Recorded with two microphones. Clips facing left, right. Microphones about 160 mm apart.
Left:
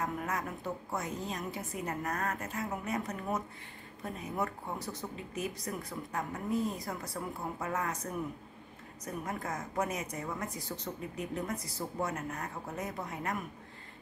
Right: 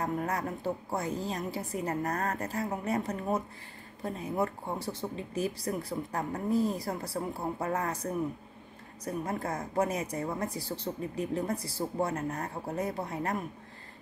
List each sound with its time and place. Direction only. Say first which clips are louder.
0.0 s a woman's voice: right 4 dB; 35° right (ahead or behind)